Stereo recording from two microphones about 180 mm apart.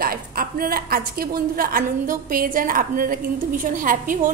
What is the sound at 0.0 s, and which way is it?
A woman's voice, 55° right (ahead or behind).